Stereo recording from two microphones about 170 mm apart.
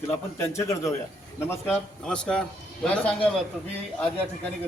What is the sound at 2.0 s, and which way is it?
Speech, 5° left (ahead or behind).